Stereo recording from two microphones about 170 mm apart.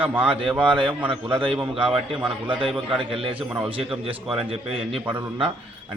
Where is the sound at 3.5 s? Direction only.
10° right (ahead or behind).